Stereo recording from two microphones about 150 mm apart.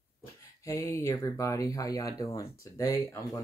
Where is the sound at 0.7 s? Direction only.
20° left (ahead or behind).